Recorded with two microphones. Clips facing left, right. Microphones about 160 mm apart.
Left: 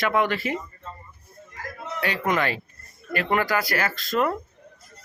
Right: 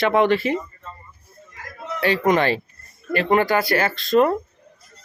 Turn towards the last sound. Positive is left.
turn(degrees=-25)  # may be behind; listen again after turning